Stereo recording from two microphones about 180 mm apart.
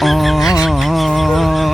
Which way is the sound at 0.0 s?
Centre (ahead or behind).